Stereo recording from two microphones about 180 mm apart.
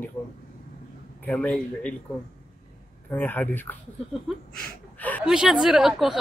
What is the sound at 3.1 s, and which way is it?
Speech, 10° left (ahead or behind).